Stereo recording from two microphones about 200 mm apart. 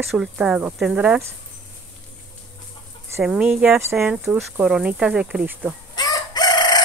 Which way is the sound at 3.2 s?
5° right (ahead or behind).